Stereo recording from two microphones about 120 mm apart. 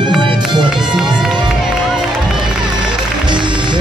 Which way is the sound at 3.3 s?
40° right (ahead or behind).